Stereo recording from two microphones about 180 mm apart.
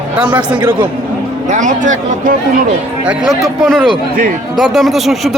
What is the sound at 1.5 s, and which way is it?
Speech, 45° right (ahead or behind).